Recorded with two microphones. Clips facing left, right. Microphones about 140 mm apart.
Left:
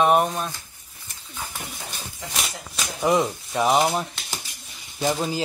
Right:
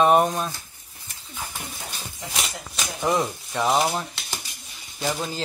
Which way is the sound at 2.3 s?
Centre (ahead or behind).